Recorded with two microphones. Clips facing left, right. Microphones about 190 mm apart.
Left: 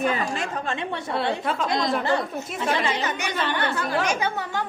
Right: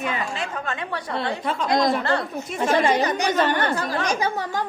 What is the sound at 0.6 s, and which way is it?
Speech, 25° left (ahead or behind).